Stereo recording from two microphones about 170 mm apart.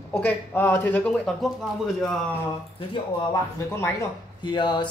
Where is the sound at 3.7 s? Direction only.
15° left (ahead or behind).